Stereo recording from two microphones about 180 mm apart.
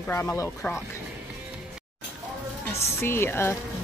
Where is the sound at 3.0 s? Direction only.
15° left (ahead or behind).